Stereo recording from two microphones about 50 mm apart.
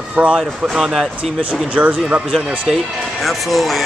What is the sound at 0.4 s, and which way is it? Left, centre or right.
Speech, centre.